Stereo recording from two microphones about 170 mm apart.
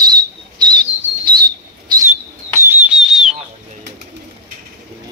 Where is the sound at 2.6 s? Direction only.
10° right (ahead or behind).